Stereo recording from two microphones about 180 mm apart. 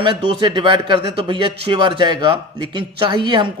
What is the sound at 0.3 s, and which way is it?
Speech, 25° right (ahead or behind).